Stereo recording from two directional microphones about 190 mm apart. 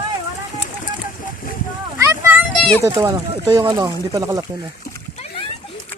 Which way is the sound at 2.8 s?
15° right (ahead or behind).